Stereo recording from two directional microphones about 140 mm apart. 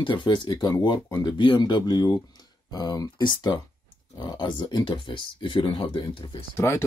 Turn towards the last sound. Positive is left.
turn(degrees=20)  # may be behind; listen again after turning